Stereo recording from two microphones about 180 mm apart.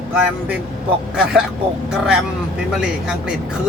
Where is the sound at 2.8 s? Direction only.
5° right (ahead or behind).